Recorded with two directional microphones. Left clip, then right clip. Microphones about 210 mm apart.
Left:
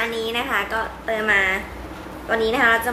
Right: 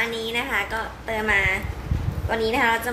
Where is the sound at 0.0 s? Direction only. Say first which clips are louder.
Left 2 dB; 5° left (ahead or behind).